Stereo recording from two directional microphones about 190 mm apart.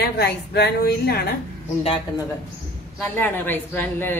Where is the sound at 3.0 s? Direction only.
10° left (ahead or behind).